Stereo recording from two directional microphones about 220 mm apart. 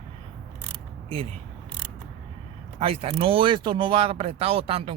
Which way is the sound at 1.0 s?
25° right (ahead or behind).